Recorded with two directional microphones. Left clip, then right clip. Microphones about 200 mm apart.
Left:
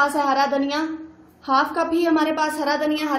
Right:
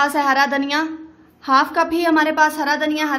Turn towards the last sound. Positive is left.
turn(degrees=-50)  # may be behind; listen again after turning